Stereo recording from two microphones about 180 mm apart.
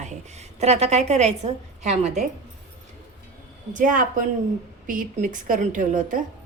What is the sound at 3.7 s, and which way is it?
A woman's voice, 45° right (ahead or behind).